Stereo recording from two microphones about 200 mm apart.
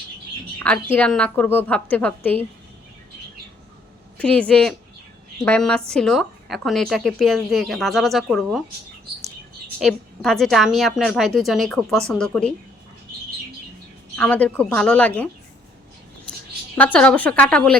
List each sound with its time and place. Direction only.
0.6 s a woman's voice: 5° left (ahead or behind)
4.2 s a woman's voice: 5° left (ahead or behind)
9.8 s a woman's voice: centre (ahead or behind)
14.2 s a woman's voice: 5° left (ahead or behind)
16.7 s a woman's voice: 5° left (ahead or behind)